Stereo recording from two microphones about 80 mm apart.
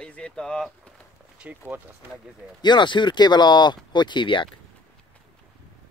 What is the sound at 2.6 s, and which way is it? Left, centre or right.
Speech, left.